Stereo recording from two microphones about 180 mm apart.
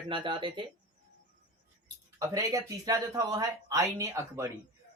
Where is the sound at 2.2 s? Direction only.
20° right (ahead or behind).